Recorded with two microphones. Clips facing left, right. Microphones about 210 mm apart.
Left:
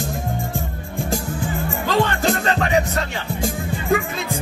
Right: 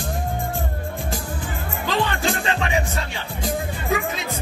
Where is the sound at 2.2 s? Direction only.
40° left (ahead or behind).